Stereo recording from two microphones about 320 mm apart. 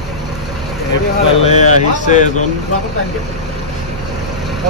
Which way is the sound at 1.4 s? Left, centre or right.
Left.